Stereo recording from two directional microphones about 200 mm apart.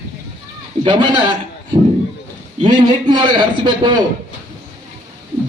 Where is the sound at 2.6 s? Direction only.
20° right (ahead or behind).